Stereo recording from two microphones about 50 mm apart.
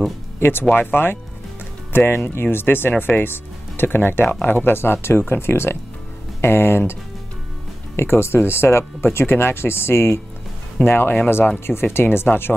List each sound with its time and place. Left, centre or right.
0.4 s speech: left
7.9 s speech: left
10.9 s speech: left